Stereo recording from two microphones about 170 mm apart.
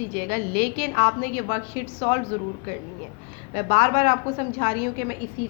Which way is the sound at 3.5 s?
40° left (ahead or behind).